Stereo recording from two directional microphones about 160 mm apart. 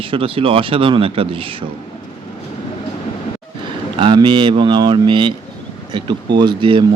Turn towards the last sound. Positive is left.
turn(degrees=-30)  # may be behind; listen again after turning